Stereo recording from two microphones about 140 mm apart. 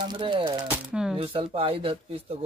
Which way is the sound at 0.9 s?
5° right (ahead or behind).